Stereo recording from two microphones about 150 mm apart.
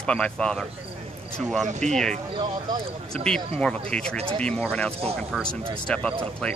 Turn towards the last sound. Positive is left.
turn(degrees=5)  # may be behind; listen again after turning